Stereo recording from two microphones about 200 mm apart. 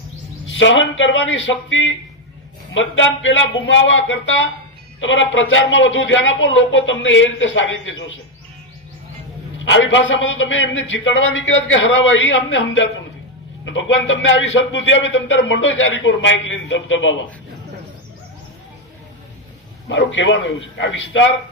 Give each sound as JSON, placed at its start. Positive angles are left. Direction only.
{"t": 0.4, "sound": "a man's voice", "side_deg": 70}
{"t": 9.6, "sound": "a man's voice", "side_deg": 70}
{"t": 19.9, "sound": "a man's voice", "side_deg": 70}